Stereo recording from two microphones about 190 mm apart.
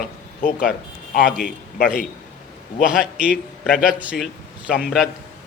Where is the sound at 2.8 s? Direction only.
5° right (ahead or behind).